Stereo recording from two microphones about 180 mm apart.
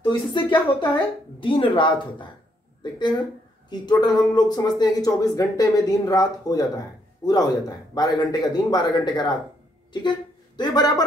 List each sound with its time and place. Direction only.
0.0 s speech: 25° left (ahead or behind)